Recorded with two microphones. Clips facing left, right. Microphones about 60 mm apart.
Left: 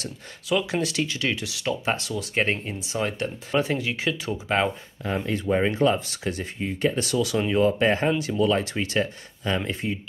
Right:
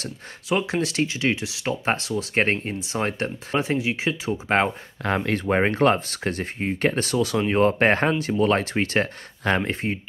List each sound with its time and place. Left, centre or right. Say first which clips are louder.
0.0 s speech: right 1 dB; right
1.9 s speech: right 3 dB; right
3.5 s speech: right 1 dB; right
4.5 s speech: right 3 dB; right
5.0 s speech: right 3 dB; right
5.4 s speech: right 1 dB; right
8.2 s speech: right 2 dB; right
9.7 s speech: right 2 dB; right